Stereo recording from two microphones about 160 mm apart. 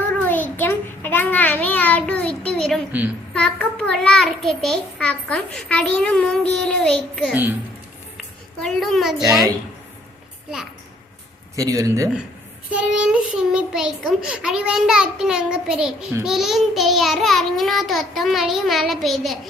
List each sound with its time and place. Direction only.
0.2 s child singing: 10° left (ahead or behind)
3.3 s a child's voice: 5° left (ahead or behind)
8.6 s a child's voice: centre (ahead or behind)
11.5 s speech: 20° right (ahead or behind)
12.7 s a child's voice: 5° right (ahead or behind)